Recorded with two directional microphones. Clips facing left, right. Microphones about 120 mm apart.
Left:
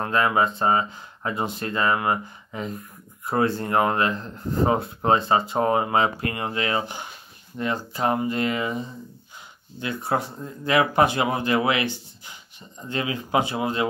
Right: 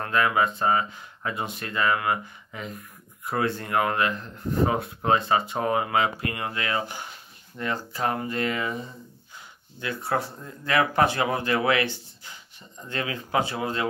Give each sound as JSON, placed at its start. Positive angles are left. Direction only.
{"t": 0.0, "sound": "speech", "side_deg": 30}
{"t": 9.8, "sound": "speech", "side_deg": 20}